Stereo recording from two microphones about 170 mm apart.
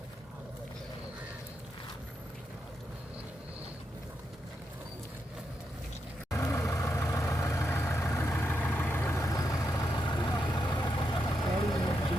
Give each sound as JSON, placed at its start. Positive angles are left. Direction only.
{"t": 6.3, "sound": "vehicle", "side_deg": 15}